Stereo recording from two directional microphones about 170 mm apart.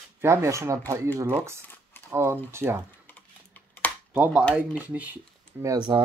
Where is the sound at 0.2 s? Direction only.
15° right (ahead or behind).